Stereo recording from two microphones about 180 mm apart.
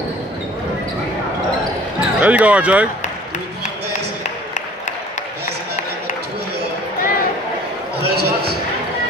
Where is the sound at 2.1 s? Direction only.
10° right (ahead or behind).